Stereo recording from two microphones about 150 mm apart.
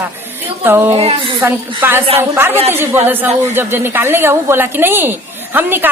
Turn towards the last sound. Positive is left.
turn(degrees=-15)  # may be behind; listen again after turning